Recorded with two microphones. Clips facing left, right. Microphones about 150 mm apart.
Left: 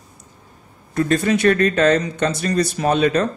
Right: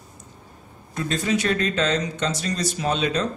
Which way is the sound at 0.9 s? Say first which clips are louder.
Left 6 dB; 55° left (ahead or behind).